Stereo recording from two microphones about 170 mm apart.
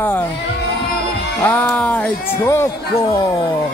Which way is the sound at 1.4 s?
10° left (ahead or behind).